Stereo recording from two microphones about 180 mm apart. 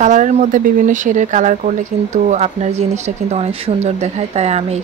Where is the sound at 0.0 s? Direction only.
45° right (ahead or behind).